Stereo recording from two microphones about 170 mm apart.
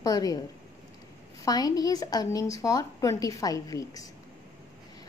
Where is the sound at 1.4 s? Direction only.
20° left (ahead or behind).